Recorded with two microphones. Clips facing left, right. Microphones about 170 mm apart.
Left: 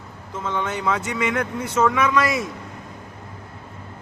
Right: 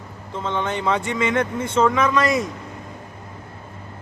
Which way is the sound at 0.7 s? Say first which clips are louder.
Right 2 dB; 5° left (ahead or behind).